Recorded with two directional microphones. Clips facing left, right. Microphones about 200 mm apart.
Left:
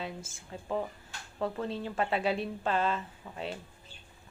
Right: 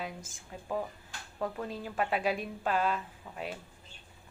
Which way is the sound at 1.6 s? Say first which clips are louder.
Left 2 dB; 10° right (ahead or behind).